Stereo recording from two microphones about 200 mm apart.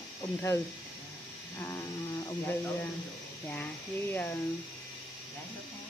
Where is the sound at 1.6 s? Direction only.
15° left (ahead or behind).